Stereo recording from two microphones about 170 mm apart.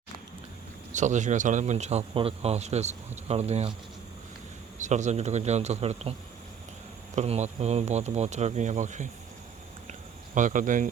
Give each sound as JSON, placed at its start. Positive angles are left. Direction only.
{"t": 0.9, "sound": "speech", "side_deg": -45}
{"t": 4.8, "sound": "speech", "side_deg": -45}
{"t": 7.2, "sound": "speech", "side_deg": -40}
{"t": 10.3, "sound": "speech", "side_deg": -50}